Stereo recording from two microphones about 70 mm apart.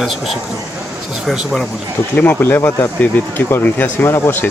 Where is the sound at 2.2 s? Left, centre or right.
Left.